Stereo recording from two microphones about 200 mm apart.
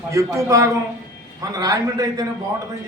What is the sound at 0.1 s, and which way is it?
A man's voice, 15° right (ahead or behind).